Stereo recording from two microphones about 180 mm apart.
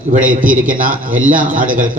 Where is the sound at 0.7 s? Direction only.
50° right (ahead or behind).